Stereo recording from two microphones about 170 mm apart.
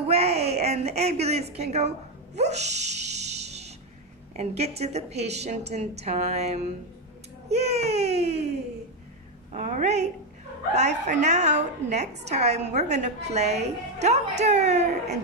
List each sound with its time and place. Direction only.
0.0 s a woman's voice: 35° right (ahead or behind)
2.3 s dog: 40° right (ahead or behind)
4.4 s a woman's voice: 40° right (ahead or behind)
9.5 s a woman's voice: 45° right (ahead or behind)